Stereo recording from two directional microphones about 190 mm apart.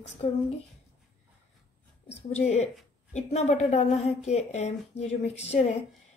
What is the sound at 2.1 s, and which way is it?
A woman's voice, 35° left (ahead or behind).